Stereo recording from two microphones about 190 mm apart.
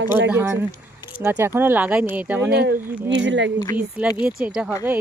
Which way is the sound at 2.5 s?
55° right (ahead or behind).